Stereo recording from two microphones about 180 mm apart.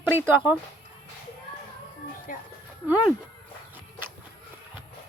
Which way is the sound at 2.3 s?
50° left (ahead or behind).